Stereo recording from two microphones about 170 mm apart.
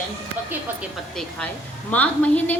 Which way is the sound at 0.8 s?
Centre (ahead or behind).